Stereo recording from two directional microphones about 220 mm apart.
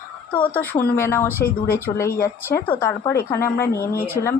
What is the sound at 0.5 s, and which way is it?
Speech, 10° left (ahead or behind).